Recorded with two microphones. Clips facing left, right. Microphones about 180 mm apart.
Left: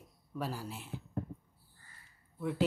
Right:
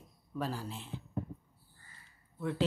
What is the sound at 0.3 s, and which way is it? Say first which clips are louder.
Speech: right 1 dB; 10° left (ahead or behind).